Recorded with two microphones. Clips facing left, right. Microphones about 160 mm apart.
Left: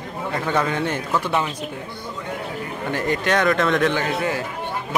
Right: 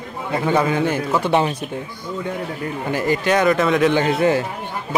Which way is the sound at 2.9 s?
5° right (ahead or behind).